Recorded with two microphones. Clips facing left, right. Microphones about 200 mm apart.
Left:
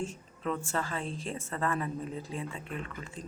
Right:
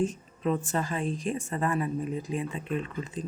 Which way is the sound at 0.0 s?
20° right (ahead or behind).